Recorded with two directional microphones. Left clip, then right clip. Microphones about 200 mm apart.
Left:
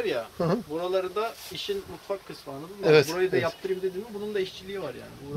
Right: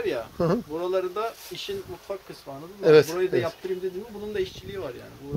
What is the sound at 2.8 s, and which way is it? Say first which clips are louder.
Speech: right 3 dB; 30° right (ahead or behind).